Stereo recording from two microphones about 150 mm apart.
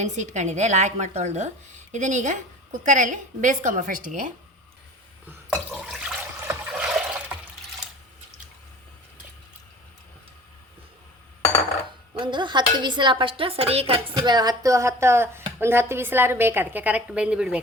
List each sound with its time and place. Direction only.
0.0 s speech: 50° right (ahead or behind)
5.7 s toilet flush: 5° right (ahead or behind)
6.7 s water: 5° right (ahead or behind)
12.1 s speech: 30° right (ahead or behind)
14.2 s speech: 25° right (ahead or behind); by 17.6 s 5° right (ahead or behind)